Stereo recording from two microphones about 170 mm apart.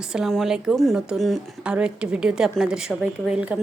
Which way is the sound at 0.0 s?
5° right (ahead or behind).